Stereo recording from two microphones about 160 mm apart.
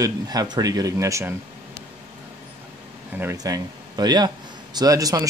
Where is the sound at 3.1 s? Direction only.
15° right (ahead or behind).